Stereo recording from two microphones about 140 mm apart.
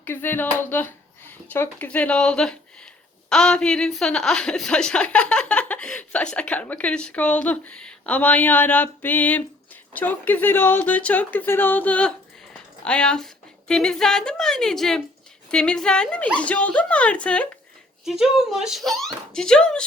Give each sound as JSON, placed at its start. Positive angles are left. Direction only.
{"t": 0.0, "sound": "a woman's voice", "side_deg": 15}
{"t": 18.0, "sound": "a woman's voice", "side_deg": 0}